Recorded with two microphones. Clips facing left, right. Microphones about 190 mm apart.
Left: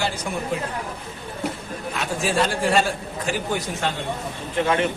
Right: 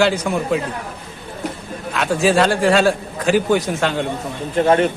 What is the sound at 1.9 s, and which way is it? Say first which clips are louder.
A man's voice: right 7 dB; 90° right.